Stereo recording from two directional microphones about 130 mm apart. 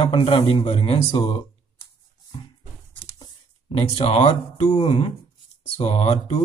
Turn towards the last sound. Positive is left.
turn(degrees=55)  # may be behind; listen again after turning